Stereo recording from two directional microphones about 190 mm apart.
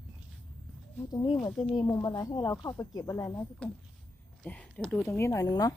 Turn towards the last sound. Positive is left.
turn(degrees=20)  # may be behind; listen again after turning